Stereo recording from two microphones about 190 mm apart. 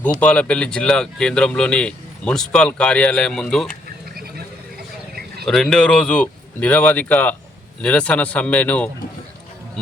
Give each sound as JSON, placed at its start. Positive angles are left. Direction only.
{"t": 0.0, "sound": "speech", "side_deg": 5}
{"t": 4.1, "sound": "a sound", "side_deg": -55}
{"t": 5.5, "sound": "speech", "side_deg": 0}